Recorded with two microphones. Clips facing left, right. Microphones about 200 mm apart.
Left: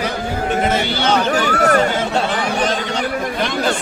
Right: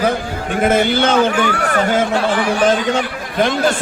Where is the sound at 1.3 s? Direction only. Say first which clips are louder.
Left 2 dB; 40° left (ahead or behind).